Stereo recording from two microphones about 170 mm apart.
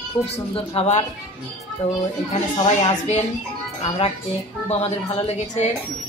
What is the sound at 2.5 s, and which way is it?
Speech, 35° left (ahead or behind).